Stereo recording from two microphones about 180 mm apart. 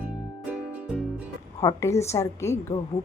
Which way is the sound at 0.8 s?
5° right (ahead or behind).